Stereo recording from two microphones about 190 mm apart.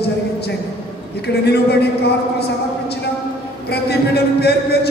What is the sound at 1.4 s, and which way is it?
Speech, 60° left (ahead or behind).